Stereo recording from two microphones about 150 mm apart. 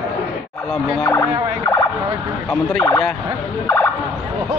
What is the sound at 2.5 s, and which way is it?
Speech, centre (ahead or behind).